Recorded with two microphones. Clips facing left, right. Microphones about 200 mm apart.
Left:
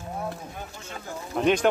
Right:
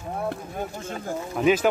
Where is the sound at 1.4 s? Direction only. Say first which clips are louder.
Right 2 dB; 5° right (ahead or behind).